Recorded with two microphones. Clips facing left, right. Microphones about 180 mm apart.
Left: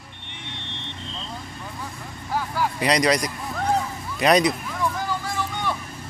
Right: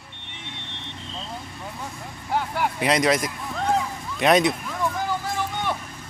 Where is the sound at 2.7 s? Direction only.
Centre (ahead or behind).